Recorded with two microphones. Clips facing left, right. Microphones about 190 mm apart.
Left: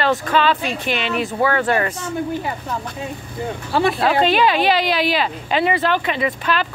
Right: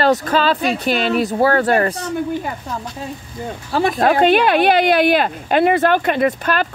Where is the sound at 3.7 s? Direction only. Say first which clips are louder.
Right 2 dB; 40° right (ahead or behind).